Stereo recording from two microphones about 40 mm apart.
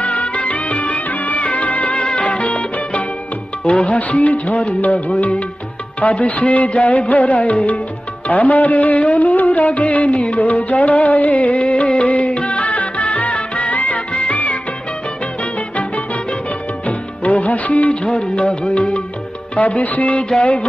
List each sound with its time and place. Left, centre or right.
0.0 s music of bollywood: left
2.0 s music: left
3.6 s music of bollywood: left
8.3 s music: left
16.8 s music of bollywood: left
18.0 s music: left
19.5 s music of bollywood: left
20.3 s music: left